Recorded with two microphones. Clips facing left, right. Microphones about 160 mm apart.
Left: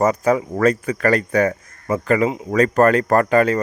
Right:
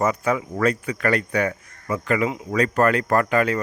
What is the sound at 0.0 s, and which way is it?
Speech, 40° left (ahead or behind).